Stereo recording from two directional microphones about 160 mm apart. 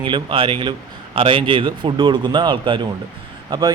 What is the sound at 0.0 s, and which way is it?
A man's voice, 30° right (ahead or behind).